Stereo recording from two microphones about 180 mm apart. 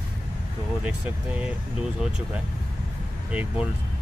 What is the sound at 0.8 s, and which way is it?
Speech, 5° right (ahead or behind).